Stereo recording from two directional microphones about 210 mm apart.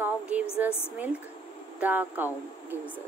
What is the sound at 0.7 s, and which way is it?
Speech, 10° left (ahead or behind).